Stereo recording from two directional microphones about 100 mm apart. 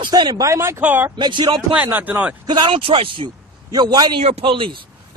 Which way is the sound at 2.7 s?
65° right (ahead or behind).